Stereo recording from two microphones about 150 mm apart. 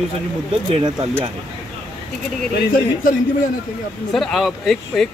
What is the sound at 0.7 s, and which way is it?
Speech, 40° right (ahead or behind).